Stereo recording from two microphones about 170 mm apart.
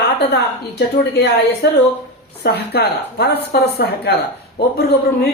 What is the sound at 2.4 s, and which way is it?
Speech, 75° left (ahead or behind).